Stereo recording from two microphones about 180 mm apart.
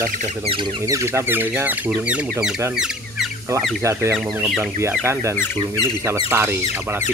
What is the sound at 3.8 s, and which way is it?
Speech, 15° right (ahead or behind).